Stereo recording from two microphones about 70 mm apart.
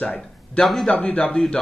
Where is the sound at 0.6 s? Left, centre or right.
Centre.